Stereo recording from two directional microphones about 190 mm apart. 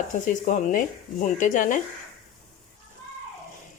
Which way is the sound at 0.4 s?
45° left (ahead or behind).